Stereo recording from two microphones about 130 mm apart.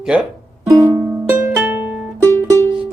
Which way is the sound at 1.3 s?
15° right (ahead or behind).